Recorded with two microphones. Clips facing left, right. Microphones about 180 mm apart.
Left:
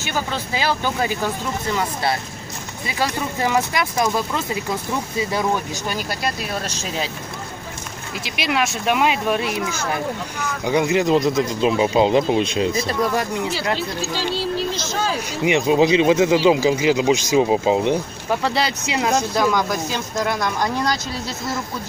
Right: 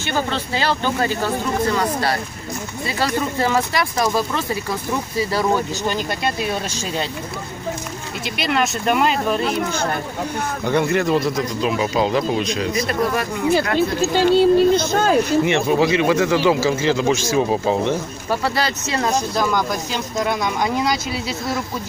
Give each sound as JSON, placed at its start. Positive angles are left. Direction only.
{"t": 0.1, "sound": "speech", "side_deg": 10}
{"t": 8.4, "sound": "speech", "side_deg": 0}
{"t": 10.6, "sound": "speech", "side_deg": 10}
{"t": 13.7, "sound": "speech", "side_deg": -55}
{"t": 15.4, "sound": "speech", "side_deg": 15}
{"t": 19.3, "sound": "speech", "side_deg": 0}